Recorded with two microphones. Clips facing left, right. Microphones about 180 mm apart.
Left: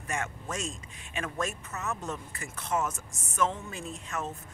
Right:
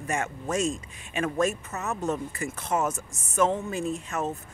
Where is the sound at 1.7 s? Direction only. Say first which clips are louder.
Right 6 dB; 45° right (ahead or behind).